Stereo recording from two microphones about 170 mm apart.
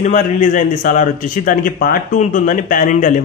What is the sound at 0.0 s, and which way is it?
A man's voice, 50° left (ahead or behind).